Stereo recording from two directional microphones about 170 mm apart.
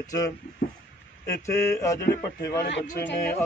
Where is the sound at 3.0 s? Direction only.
80° left.